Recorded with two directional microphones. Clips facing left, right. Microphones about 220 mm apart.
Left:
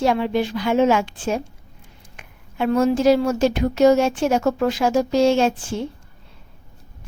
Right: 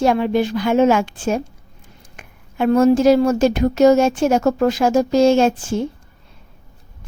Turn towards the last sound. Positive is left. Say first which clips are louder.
# right 4 dB
turn(degrees=-45)  # may be behind; listen again after turning